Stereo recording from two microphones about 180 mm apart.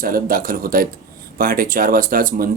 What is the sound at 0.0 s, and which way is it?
Speech, 50° right (ahead or behind).